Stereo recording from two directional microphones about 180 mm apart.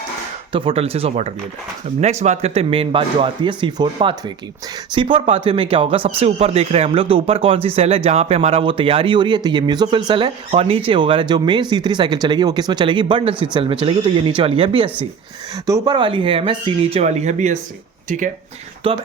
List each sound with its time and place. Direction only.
0.5 s speech: 30° right (ahead or behind)
18.8 s speech: 30° right (ahead or behind)